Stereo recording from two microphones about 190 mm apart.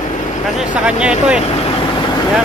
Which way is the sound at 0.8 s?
5° right (ahead or behind).